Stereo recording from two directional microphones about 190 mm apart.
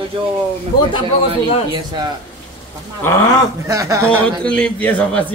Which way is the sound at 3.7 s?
15° right (ahead or behind).